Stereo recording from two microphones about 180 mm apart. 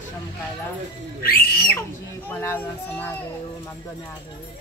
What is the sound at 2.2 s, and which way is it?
Speech, 10° left (ahead or behind).